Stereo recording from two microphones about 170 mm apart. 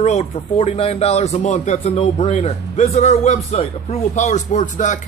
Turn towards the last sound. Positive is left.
turn(degrees=50)  # may be behind; listen again after turning